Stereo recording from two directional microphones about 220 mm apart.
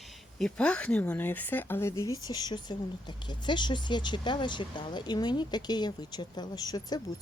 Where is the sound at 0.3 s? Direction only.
5° left (ahead or behind).